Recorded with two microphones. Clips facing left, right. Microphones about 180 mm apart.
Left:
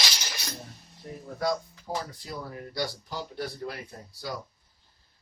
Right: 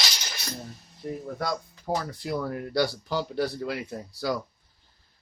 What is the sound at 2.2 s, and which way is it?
Speech, 70° right (ahead or behind).